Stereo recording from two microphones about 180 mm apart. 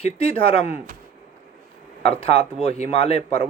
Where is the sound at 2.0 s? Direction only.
35° left (ahead or behind).